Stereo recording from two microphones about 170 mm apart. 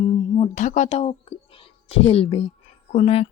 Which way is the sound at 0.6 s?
45° left (ahead or behind).